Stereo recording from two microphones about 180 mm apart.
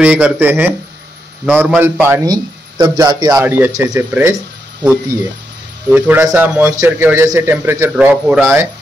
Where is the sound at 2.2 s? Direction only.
20° right (ahead or behind).